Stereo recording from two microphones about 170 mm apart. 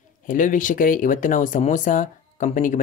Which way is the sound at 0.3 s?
50° left (ahead or behind).